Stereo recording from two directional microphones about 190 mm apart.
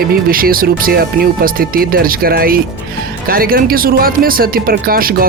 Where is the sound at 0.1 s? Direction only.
50° right (ahead or behind).